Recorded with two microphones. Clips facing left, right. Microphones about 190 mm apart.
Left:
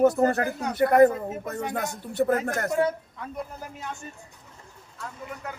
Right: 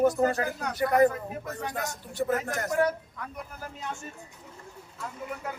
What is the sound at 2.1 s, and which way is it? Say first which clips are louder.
Speech: left 5 dB; 60° left (ahead or behind).